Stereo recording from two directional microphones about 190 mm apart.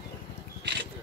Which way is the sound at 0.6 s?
65° right (ahead or behind).